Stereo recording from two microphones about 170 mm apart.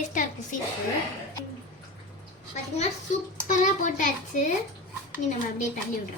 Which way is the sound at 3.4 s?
50° left (ahead or behind).